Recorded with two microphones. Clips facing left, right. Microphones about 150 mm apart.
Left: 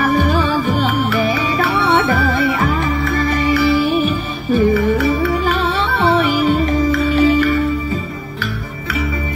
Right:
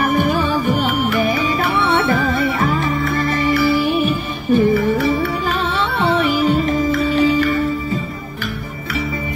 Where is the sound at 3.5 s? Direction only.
50° right (ahead or behind).